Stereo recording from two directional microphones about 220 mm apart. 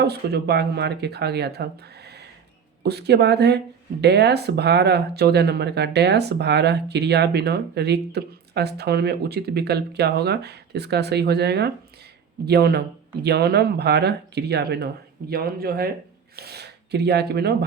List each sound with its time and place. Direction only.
0.0 s speech: 45° right (ahead or behind)